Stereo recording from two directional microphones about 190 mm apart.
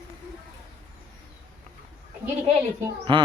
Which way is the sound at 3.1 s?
25° right (ahead or behind).